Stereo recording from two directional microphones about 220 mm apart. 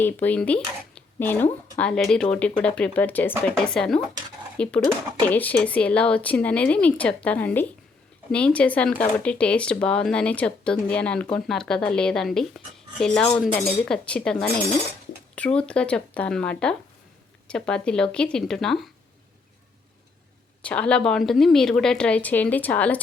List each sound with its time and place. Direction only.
0.0 s speech: 10° left (ahead or behind)
0.9 s zipper: 10° left (ahead or behind)
1.8 s speech: 5° left (ahead or behind)
20.6 s speech: 5° left (ahead or behind)